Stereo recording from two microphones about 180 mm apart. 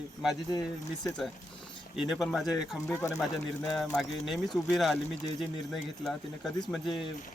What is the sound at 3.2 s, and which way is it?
Speech, 5° left (ahead or behind).